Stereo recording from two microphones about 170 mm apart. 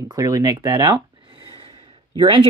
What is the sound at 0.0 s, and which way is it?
Speech, 20° right (ahead or behind).